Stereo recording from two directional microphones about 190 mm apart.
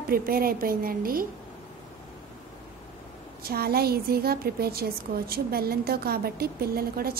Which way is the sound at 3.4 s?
55° right (ahead or behind).